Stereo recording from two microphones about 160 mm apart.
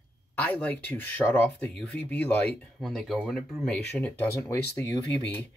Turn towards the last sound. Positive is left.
turn(degrees=15)  # may be behind; listen again after turning